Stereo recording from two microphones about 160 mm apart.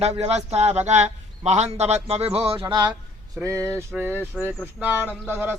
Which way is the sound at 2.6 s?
20° right (ahead or behind).